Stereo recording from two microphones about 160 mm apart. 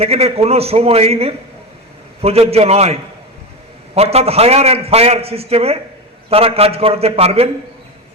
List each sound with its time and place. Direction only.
0.0 s a man's voice: 40° right (ahead or behind)